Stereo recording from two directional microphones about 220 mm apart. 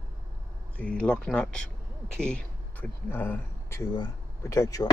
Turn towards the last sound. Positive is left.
turn(degrees=15)  # may be behind; listen again after turning